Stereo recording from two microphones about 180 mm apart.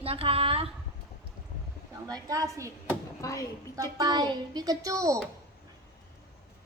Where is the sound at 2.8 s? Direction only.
15° left (ahead or behind).